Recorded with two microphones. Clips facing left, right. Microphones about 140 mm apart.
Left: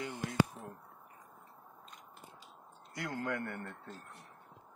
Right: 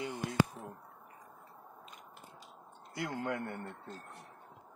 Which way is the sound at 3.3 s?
25° right (ahead or behind).